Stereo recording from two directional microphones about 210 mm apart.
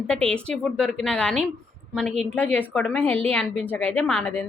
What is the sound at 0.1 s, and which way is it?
A woman's voice, 5° left (ahead or behind).